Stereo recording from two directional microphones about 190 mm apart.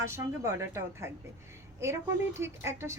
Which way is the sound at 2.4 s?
15° right (ahead or behind).